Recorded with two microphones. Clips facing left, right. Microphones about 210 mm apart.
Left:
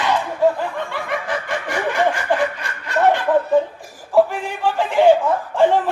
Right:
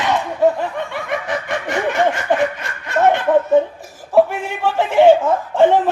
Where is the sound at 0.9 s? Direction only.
20° right (ahead or behind).